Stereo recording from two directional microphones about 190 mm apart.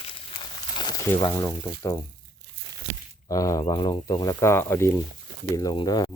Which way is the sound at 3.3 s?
15° left (ahead or behind).